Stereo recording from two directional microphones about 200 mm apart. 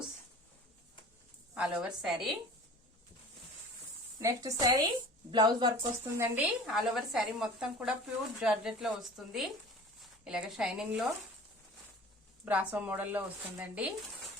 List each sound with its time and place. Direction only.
1.5 s speech: 5° right (ahead or behind)
4.2 s speech: 15° right (ahead or behind)
6.1 s speech: 5° right (ahead or behind)
12.5 s speech: 5° right (ahead or behind)